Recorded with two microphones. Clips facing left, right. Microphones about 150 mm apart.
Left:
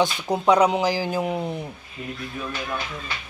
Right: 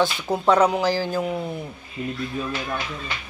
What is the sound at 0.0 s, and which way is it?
Speech, 15° left (ahead or behind).